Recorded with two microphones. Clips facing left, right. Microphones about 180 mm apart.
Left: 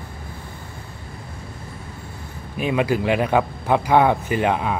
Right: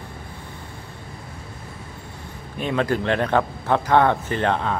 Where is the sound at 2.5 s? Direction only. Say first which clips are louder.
Left 2 dB; 10° left (ahead or behind).